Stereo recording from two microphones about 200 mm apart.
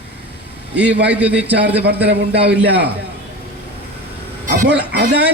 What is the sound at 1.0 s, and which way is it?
Speech, 5° right (ahead or behind).